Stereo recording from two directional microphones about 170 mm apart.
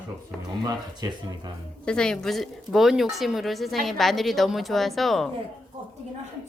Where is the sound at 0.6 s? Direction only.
25° right (ahead or behind).